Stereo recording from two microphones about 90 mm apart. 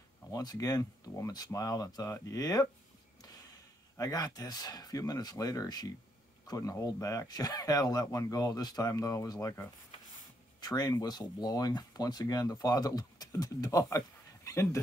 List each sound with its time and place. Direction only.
0.3 s speech: 45° left (ahead or behind)
4.0 s speech: 45° left (ahead or behind)